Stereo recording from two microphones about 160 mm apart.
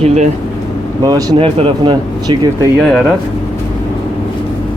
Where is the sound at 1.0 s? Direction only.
25° right (ahead or behind).